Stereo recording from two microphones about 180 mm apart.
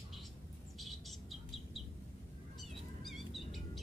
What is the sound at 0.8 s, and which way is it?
Bird, centre (ahead or behind).